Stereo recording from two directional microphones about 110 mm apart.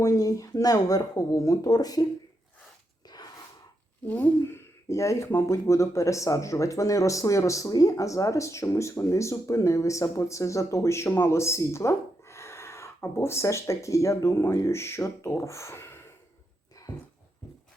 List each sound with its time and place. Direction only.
0.0 s speech: 30° left (ahead or behind)
4.0 s speech: 15° left (ahead or behind)
16.9 s dog: 15° left (ahead or behind)